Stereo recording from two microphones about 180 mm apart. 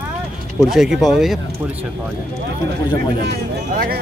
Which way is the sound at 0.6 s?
Centre (ahead or behind).